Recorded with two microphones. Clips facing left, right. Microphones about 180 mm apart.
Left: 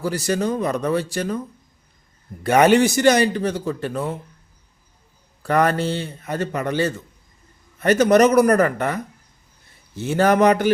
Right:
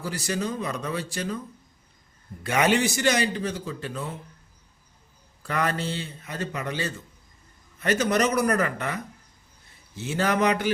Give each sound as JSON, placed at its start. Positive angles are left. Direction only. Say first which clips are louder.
{"t": 0.1, "sound": "a man's voice", "louder": "left 6 dB", "side_deg": 50}
{"t": 2.4, "sound": "a man's voice", "louder": "left 8 dB", "side_deg": 50}
{"t": 5.4, "sound": "a man's voice", "louder": "left 8 dB", "side_deg": 50}
{"t": 10.0, "sound": "a man's voice", "louder": "left 8 dB", "side_deg": 50}